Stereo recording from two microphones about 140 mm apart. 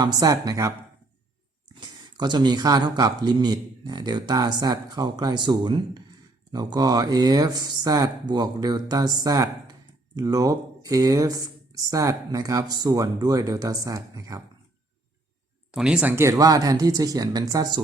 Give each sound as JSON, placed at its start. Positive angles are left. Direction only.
{"t": 0.0, "sound": "speech", "side_deg": -25}
{"t": 1.8, "sound": "speech", "side_deg": -30}
{"t": 15.7, "sound": "speech", "side_deg": -5}